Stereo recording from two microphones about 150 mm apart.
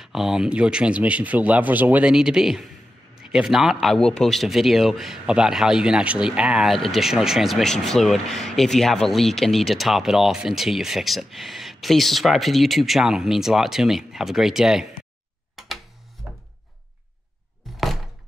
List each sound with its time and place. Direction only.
0.0 s speech: 5° right (ahead or behind)
15.6 s a sound: centre (ahead or behind)
17.6 s thunk: centre (ahead or behind)